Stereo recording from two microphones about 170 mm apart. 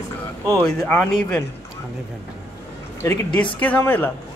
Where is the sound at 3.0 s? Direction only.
15° left (ahead or behind).